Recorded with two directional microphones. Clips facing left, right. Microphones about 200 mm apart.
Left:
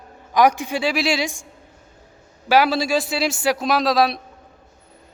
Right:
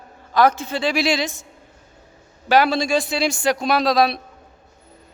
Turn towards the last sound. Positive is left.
turn(degrees=0)  # may be behind; listen again after turning